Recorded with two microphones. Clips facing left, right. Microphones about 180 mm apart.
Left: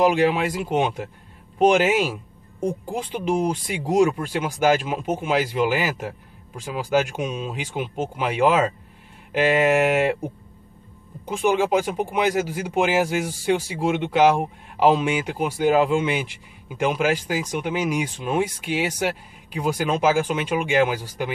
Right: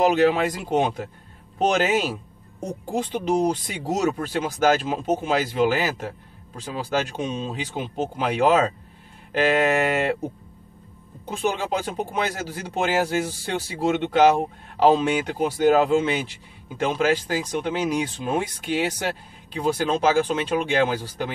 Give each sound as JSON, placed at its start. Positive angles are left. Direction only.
{"t": 0.1, "sound": "speech", "side_deg": 10}
{"t": 11.8, "sound": "speech", "side_deg": 10}